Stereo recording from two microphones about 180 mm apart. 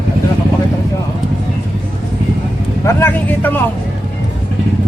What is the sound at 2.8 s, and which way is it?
Vehicle, 15° left (ahead or behind).